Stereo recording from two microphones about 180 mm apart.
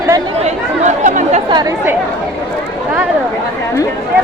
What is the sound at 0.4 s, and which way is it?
Chatter, 40° right (ahead or behind).